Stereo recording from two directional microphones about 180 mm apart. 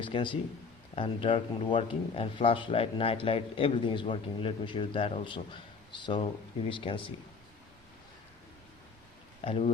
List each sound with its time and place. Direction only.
0.0 s a man's voice: 25° left (ahead or behind)
9.4 s speech: 35° left (ahead or behind)